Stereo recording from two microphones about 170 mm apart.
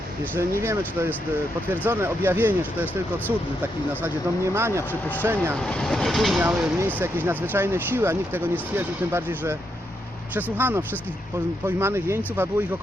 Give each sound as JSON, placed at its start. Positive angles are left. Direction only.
{"t": 0.6, "sound": "speech", "side_deg": -15}
{"t": 4.0, "sound": "speech", "side_deg": -15}
{"t": 5.5, "sound": "speech", "side_deg": 5}